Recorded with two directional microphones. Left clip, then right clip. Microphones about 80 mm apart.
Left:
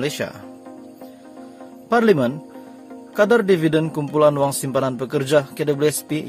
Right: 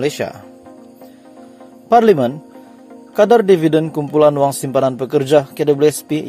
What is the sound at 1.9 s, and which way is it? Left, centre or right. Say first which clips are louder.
A man's voice: right 6 dB; right.